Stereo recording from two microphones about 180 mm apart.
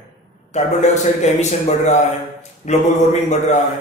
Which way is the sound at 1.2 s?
40° left (ahead or behind).